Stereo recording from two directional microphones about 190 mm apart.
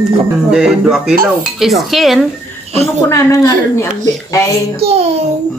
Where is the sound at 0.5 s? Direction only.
5° right (ahead or behind).